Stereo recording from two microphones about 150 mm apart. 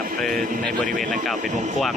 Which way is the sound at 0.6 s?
10° left (ahead or behind).